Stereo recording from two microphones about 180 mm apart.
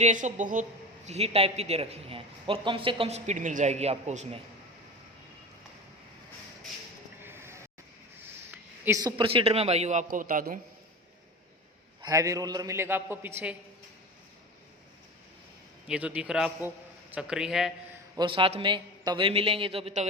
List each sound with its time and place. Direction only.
0.0 s a woman's voice: 40° right (ahead or behind)
7.2 s a sound: 15° right (ahead or behind)
8.4 s a man's voice: 15° right (ahead or behind); by 10.6 s 50° right (ahead or behind)
12.0 s a man's voice: 15° right (ahead or behind)
15.9 s a man's voice: 5° right (ahead or behind)
18.2 s a man's voice: 30° right (ahead or behind)